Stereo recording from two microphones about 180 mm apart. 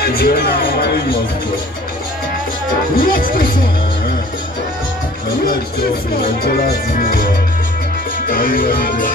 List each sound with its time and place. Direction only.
0.0 s speech: 60° left (ahead or behind)
3.0 s speech: 50° left (ahead or behind)
6.4 s music: 55° left (ahead or behind)
8.3 s music: 50° left (ahead or behind)